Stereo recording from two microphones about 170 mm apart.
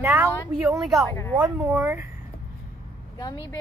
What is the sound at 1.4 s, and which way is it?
Speech, 15° right (ahead or behind).